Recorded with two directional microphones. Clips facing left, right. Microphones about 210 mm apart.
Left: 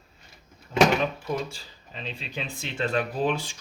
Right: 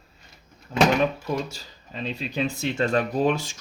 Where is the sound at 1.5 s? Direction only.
40° right (ahead or behind).